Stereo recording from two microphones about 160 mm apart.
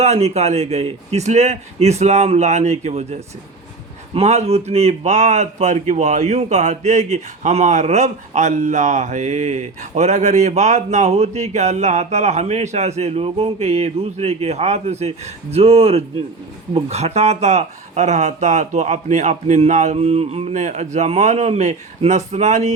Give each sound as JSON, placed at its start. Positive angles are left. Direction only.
{"t": 0.0, "sound": "a man's voice", "side_deg": -45}